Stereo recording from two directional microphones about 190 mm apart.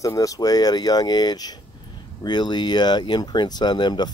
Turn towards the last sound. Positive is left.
turn(degrees=20)  # may be behind; listen again after turning